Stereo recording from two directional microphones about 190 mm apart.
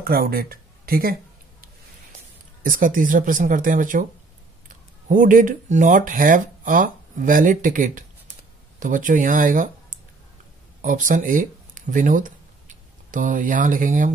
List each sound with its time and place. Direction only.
0.0 s speech: 50° right (ahead or behind)
2.6 s speech: 45° right (ahead or behind)